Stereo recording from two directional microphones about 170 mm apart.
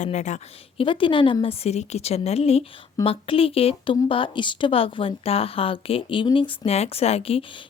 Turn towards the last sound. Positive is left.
turn(degrees=35)  # may be behind; listen again after turning